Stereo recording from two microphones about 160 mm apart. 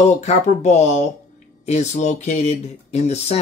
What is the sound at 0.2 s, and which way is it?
Speech, 45° left (ahead or behind).